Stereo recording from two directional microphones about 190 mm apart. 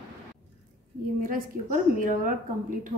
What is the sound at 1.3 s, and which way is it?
A woman's voice, 45° right (ahead or behind).